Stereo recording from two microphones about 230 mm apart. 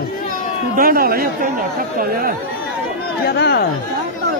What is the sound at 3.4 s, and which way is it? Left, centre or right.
Speech, left.